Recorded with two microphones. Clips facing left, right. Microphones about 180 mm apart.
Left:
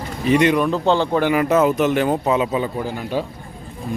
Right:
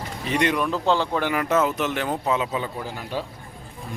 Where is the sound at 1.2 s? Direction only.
10° left (ahead or behind).